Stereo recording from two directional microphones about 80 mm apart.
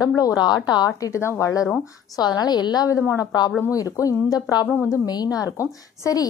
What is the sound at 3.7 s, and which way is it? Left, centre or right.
A woman's voice, left.